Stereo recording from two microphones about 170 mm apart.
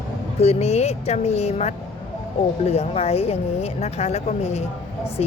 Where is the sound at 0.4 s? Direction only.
40° left (ahead or behind).